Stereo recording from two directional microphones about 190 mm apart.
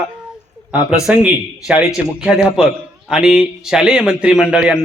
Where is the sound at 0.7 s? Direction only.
5° right (ahead or behind).